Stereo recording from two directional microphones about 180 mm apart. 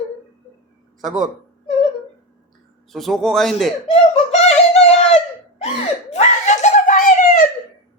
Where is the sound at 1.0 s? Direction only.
45° right (ahead or behind).